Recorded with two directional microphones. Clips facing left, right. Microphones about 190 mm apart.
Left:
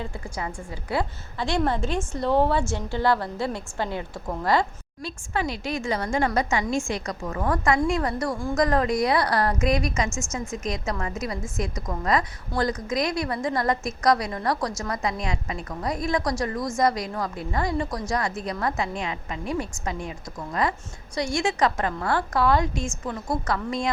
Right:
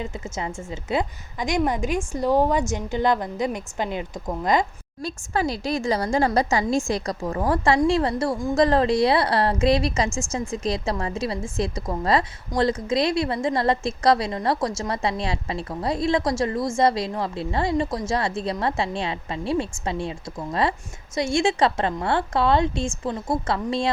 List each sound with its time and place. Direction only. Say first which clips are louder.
0.0 s a woman's voice: right 2 dB; 20° right (ahead or behind)
5.0 s a woman's voice: right 3 dB; 40° right (ahead or behind)